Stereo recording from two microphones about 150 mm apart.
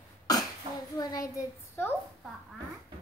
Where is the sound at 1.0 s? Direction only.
25° left (ahead or behind).